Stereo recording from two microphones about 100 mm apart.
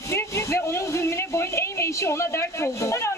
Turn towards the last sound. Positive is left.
turn(degrees=30)  # may be behind; listen again after turning